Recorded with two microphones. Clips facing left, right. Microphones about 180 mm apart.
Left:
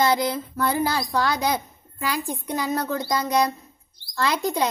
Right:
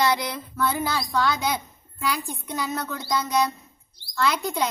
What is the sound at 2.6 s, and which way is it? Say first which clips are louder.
Child singing: left 5 dB; 35° left (ahead or behind).